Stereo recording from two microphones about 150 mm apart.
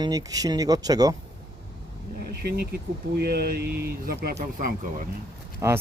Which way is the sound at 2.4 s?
90° right.